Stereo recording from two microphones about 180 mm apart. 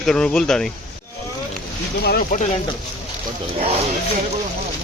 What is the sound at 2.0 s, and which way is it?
Speech, 60° left (ahead or behind).